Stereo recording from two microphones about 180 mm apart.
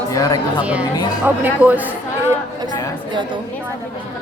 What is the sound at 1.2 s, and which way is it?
Speech, 10° right (ahead or behind).